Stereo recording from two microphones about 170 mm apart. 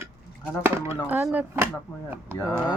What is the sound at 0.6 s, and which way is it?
Speech, 15° right (ahead or behind).